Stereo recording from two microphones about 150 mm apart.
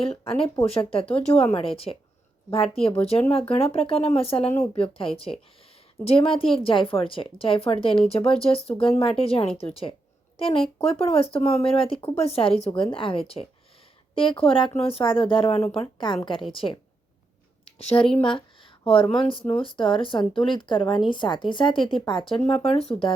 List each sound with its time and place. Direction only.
0.0 s a woman's voice: 40° left (ahead or behind)
18.3 s a sound: 35° left (ahead or behind)
19.1 s a woman's voice: 35° left (ahead or behind)